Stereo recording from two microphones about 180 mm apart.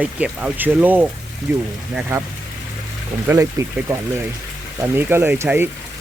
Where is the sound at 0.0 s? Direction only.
5° right (ahead or behind).